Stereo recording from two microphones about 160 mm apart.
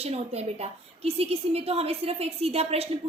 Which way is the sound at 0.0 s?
40° right (ahead or behind).